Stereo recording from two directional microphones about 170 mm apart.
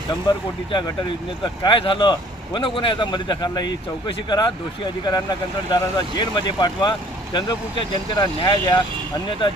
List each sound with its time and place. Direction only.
0.3 s a man's voice: 25° left (ahead or behind)
5.7 s a man's voice: 25° left (ahead or behind)